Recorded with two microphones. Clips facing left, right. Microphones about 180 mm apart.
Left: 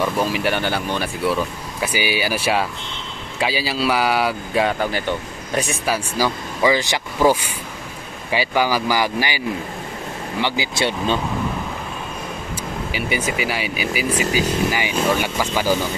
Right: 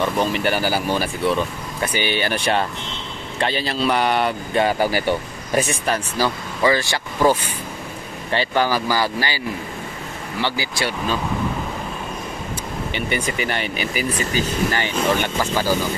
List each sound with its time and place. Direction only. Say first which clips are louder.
0.0 s speech: even; 5° left (ahead or behind)
6.1 s speech: left 1 dB; 10° left (ahead or behind)
8.3 s speech: even; 10° left (ahead or behind)
10.4 s speech: left 2 dB; 20° left (ahead or behind)
12.9 s speech: left 1 dB; 5° left (ahead or behind)